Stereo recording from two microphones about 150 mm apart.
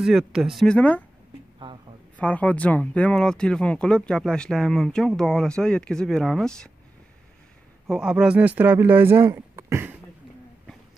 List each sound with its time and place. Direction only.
0.0 s speech: 5° right (ahead or behind)
2.1 s speech: 10° left (ahead or behind)
7.9 s speech: 5° right (ahead or behind)
9.3 s a sound: 20° right (ahead or behind)